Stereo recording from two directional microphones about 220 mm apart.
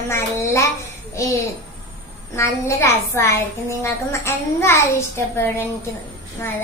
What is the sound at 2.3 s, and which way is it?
A child's voice, 15° left (ahead or behind).